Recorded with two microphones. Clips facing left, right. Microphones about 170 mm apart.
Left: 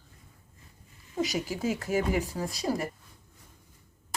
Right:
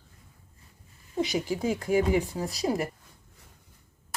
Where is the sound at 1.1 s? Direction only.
15° right (ahead or behind).